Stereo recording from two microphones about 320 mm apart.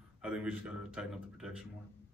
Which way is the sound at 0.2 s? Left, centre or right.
Centre.